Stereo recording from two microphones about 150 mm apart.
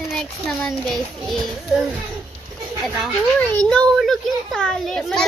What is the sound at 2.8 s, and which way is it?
A child's voice, centre (ahead or behind).